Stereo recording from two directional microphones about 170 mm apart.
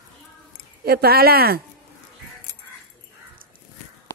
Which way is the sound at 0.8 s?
65° right (ahead or behind).